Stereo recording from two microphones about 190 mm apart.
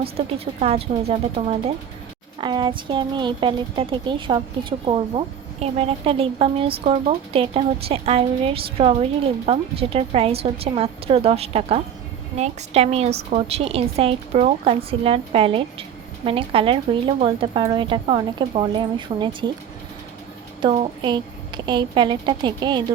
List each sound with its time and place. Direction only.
0.0 s a woman's voice: 30° right (ahead or behind)
20.6 s speech: 25° right (ahead or behind)